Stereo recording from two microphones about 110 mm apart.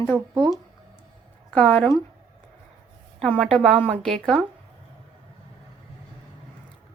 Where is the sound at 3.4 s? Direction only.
5° left (ahead or behind).